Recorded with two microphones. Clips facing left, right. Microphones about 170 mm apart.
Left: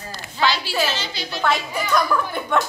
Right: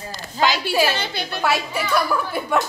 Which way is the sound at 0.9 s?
55° right (ahead or behind).